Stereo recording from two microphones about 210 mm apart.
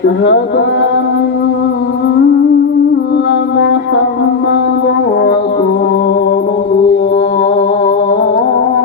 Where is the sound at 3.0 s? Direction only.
60° left (ahead or behind).